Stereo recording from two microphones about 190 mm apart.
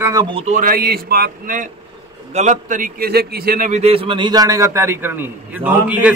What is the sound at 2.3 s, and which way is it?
A man's voice, 40° right (ahead or behind).